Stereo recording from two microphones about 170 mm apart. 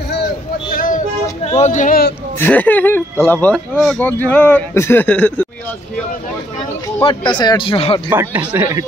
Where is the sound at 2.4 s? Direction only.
10° left (ahead or behind).